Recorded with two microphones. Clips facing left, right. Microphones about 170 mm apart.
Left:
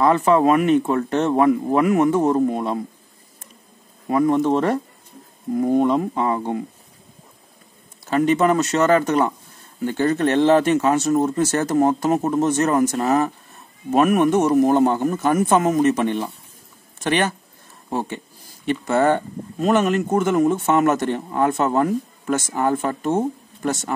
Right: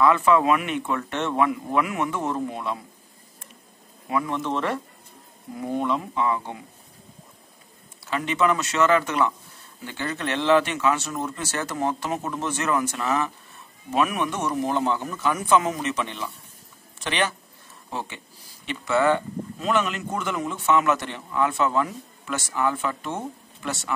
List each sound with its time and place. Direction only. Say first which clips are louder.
0.0 s speech: left 3 dB; 40° left (ahead or behind)
4.1 s speech: left 9 dB; 45° left (ahead or behind)
8.0 s speech: left 7 dB; 45° left (ahead or behind)